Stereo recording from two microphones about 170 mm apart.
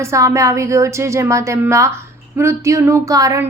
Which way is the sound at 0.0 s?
15° right (ahead or behind).